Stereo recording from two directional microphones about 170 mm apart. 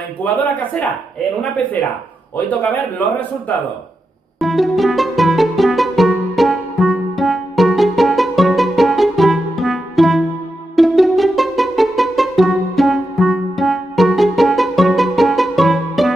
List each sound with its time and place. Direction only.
0.2 s speech: 10° left (ahead or behind)
2.3 s speech: 10° left (ahead or behind)
4.4 s music: centre (ahead or behind)